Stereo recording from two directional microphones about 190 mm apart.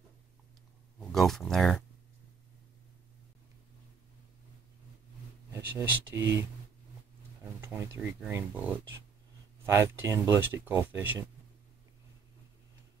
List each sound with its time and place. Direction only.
1.0 s speech: centre (ahead or behind)
5.5 s speech: 10° right (ahead or behind)
6.1 s speech: 70° right (ahead or behind)
7.6 s speech: 15° right (ahead or behind)